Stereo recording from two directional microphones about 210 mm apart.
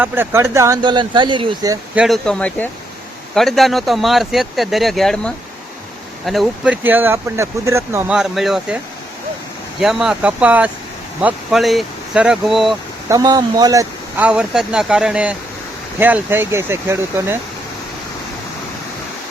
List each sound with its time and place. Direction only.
0.0 s speech: 10° right (ahead or behind)
2.0 s speech: centre (ahead or behind)
9.8 s speech: centre (ahead or behind)
13.1 s speech: 15° right (ahead or behind)